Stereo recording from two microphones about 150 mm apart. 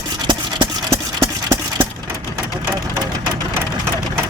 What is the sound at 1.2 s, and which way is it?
Engine, 20° right (ahead or behind).